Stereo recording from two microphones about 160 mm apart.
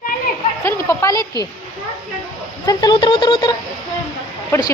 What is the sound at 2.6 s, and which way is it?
Speech, 25° left (ahead or behind).